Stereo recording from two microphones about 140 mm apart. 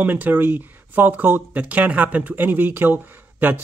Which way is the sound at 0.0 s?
15° right (ahead or behind).